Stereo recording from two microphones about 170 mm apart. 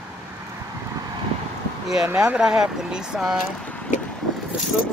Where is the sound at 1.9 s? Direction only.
5° right (ahead or behind).